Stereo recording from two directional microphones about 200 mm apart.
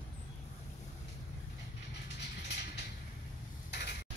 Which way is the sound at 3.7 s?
55° left (ahead or behind).